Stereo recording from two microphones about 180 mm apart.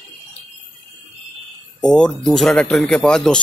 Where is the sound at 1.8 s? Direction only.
5° left (ahead or behind).